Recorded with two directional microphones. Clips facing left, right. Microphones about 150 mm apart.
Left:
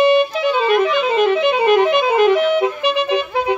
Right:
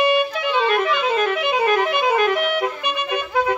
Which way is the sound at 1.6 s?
25° left (ahead or behind).